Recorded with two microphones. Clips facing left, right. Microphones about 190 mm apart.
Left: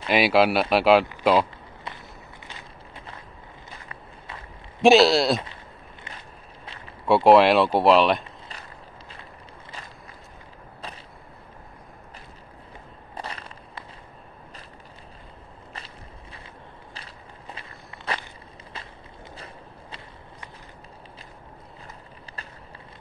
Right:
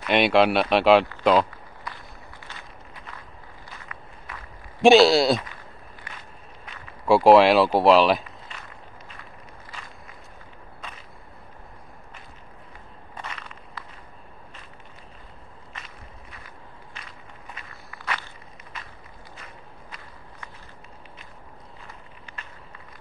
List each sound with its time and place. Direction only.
0.1 s speech: 5° left (ahead or behind)
1.9 s walk: 25° left (ahead or behind)
3.9 s walk: 25° left (ahead or behind)
4.8 s speech: centre (ahead or behind)
7.1 s speech: centre (ahead or behind)
13.1 s a sound: 35° left (ahead or behind)
16.9 s walk: 30° left (ahead or behind)
19.3 s walk: 30° left (ahead or behind)